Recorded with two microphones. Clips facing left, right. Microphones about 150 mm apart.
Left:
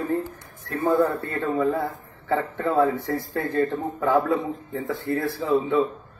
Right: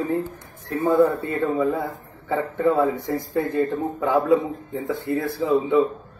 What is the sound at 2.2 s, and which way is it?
A man's voice, 15° right (ahead or behind).